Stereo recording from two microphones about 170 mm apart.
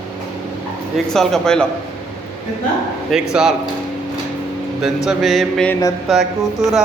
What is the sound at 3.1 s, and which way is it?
Music, 5° right (ahead or behind).